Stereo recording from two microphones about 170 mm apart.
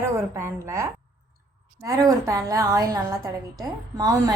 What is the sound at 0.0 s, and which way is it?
A woman's voice, 15° right (ahead or behind).